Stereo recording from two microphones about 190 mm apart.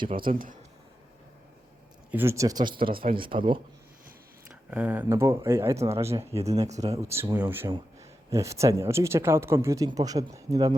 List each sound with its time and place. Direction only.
0.1 s speech: 50° right (ahead or behind)
2.0 s speech: 10° right (ahead or behind)
2.9 s speech: 50° right (ahead or behind)
3.2 s speech: 25° right (ahead or behind)
4.7 s speech: 10° right (ahead or behind)